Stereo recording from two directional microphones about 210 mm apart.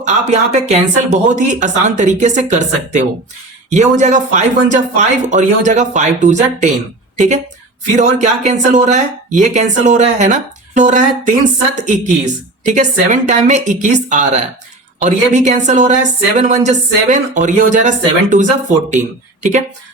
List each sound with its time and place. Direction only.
0.0 s speech: 35° right (ahead or behind)
7.9 s speech: 35° right (ahead or behind)